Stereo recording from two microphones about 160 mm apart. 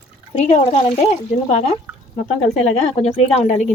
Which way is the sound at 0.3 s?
50° left (ahead or behind).